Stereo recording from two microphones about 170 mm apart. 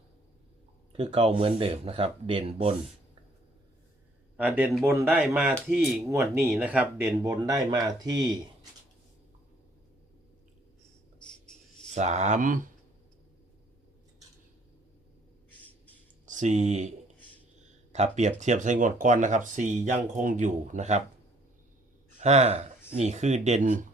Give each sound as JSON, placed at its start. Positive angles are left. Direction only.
{"t": 0.9, "sound": "speech", "side_deg": -35}
{"t": 4.4, "sound": "speech", "side_deg": -10}
{"t": 11.2, "sound": "a sound", "side_deg": 5}
{"t": 11.9, "sound": "speech", "side_deg": -45}
{"t": 16.2, "sound": "speech", "side_deg": -45}
{"t": 17.9, "sound": "speech", "side_deg": -40}
{"t": 22.2, "sound": "speech", "side_deg": -40}